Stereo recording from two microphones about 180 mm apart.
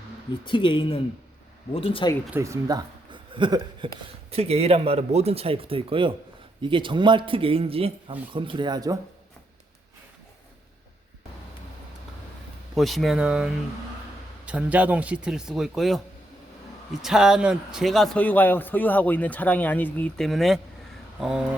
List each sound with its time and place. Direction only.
0.4 s speech: 25° left (ahead or behind)
2.4 s a man's voice: 20° right (ahead or behind)
12.7 s speech: centre (ahead or behind)
17.0 s a man's voice: centre (ahead or behind)